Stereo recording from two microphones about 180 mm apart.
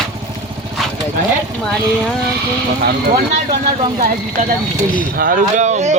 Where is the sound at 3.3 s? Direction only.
35° right (ahead or behind).